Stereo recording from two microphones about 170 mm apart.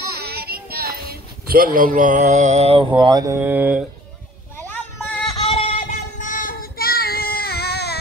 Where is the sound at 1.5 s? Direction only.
55° right (ahead or behind); by 2.9 s 40° right (ahead or behind).